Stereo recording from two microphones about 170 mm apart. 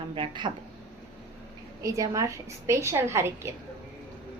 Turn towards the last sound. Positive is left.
turn(degrees=-15)  # may be behind; listen again after turning